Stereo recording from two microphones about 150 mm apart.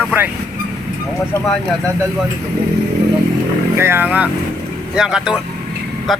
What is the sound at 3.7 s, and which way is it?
Speech, 15° right (ahead or behind).